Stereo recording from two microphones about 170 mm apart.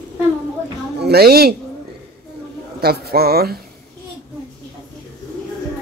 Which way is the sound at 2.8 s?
65° right (ahead or behind).